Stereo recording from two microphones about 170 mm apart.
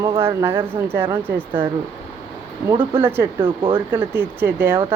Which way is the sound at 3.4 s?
25° right (ahead or behind).